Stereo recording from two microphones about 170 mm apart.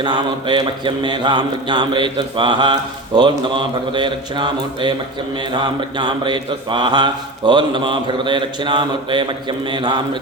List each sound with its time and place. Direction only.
0.0 s mantra: 25° right (ahead or behind)
6.0 s mantra: 25° right (ahead or behind)